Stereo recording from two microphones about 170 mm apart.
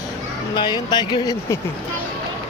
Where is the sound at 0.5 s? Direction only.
25° left (ahead or behind).